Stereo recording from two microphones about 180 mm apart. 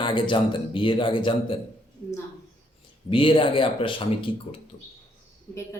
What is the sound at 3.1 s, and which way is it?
Speech, 30° left (ahead or behind).